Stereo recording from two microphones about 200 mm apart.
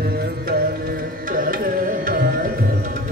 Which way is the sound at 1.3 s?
45° right (ahead or behind).